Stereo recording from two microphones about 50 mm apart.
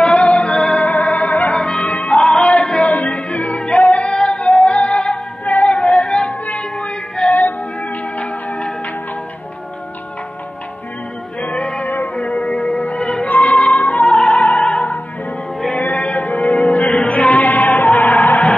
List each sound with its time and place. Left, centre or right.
0.0 s music: left
4.1 s female singing: centre
4.6 s music: left
5.4 s yodeling: left
6.4 s music: left
7.2 s music: left
8.2 s music: left
11.4 s music: left
11.8 s music: left
12.2 s music: left
13.3 s music: left